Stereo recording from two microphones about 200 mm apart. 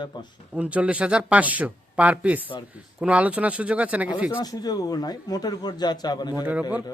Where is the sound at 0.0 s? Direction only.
20° left (ahead or behind).